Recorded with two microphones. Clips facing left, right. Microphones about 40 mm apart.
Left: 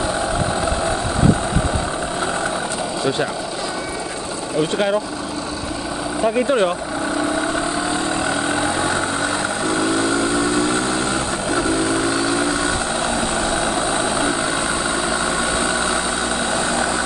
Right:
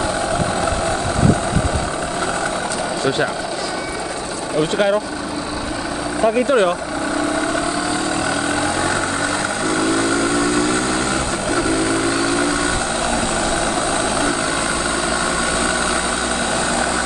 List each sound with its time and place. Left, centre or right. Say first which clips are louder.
4.6 s speech: right 2 dB; centre
6.2 s speech: right 2 dB; centre
8.5 s vehicle: right 1 dB; left
9.7 s vehicle: right 1 dB; right
13.4 s vehicle: right 1 dB; left
15.6 s vehicle: right 1 dB; right